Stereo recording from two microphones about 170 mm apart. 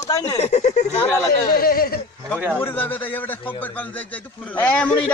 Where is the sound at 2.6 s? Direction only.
10° left (ahead or behind).